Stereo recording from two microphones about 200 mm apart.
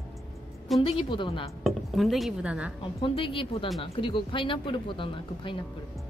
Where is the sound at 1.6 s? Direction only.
Centre (ahead or behind).